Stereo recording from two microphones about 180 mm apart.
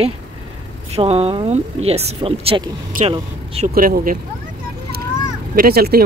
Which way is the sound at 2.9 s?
50° right (ahead or behind).